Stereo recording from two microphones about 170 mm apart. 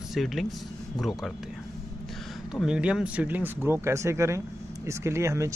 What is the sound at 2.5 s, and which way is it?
Speech, 5° right (ahead or behind).